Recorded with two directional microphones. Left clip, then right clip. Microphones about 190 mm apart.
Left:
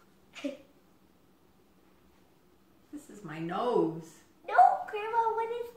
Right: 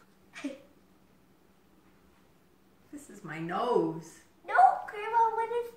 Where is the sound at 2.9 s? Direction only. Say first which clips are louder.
Left 1 dB; 5° right (ahead or behind).